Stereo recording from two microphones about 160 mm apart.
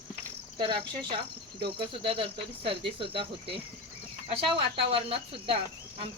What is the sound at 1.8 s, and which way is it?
Speech, 35° right (ahead or behind).